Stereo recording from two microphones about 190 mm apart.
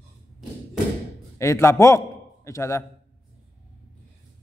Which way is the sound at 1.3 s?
15° left (ahead or behind).